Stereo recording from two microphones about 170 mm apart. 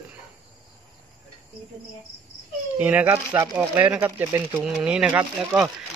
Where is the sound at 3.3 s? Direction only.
25° right (ahead or behind).